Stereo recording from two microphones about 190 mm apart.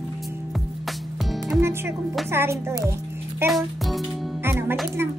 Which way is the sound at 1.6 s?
15° right (ahead or behind).